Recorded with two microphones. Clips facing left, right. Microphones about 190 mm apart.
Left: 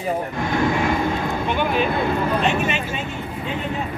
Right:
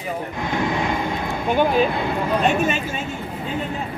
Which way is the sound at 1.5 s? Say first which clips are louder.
Right 4 dB; 40° right (ahead or behind).